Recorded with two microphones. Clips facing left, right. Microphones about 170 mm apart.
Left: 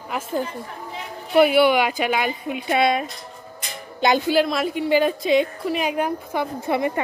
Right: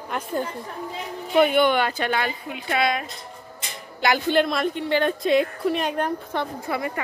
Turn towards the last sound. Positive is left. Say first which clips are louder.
# left 5 dB
turn(degrees=20)  # may be behind; listen again after turning